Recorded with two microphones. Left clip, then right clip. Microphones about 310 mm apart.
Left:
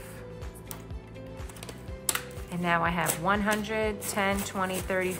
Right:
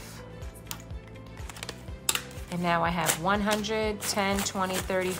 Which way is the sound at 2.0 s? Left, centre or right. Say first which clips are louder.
Right 2 dB; centre.